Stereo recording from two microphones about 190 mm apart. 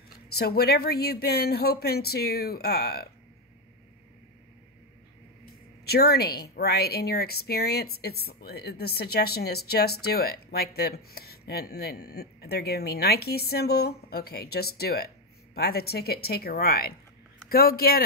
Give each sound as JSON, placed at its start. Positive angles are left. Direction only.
{"t": 0.4, "sound": "speech", "side_deg": 55}
{"t": 5.9, "sound": "speech", "side_deg": 55}